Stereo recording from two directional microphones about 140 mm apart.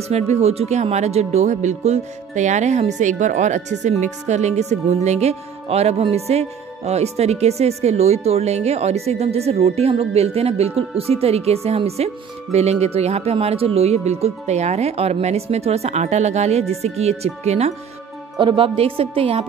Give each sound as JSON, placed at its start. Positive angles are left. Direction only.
{"t": 0.1, "sound": "speech", "side_deg": -50}
{"t": 18.4, "sound": "a woman's voice", "side_deg": -40}